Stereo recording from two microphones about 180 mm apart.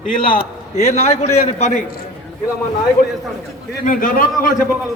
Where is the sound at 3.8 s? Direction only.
50° left (ahead or behind).